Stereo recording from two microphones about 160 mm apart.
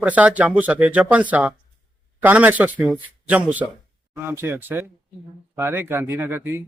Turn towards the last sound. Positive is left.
turn(degrees=-15)  # may be behind; listen again after turning